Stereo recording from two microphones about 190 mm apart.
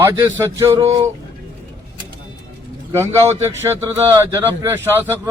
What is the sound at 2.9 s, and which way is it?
A man's voice, 15° right (ahead or behind).